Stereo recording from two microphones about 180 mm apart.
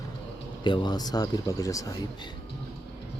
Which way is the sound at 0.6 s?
25° left (ahead or behind).